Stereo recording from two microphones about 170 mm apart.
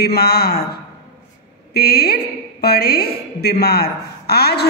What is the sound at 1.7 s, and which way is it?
A woman's voice, 65° left (ahead or behind).